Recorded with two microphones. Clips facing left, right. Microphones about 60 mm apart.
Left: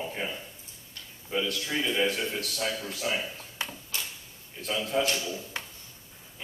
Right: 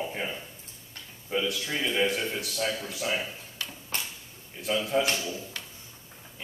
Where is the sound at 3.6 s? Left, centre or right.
Left.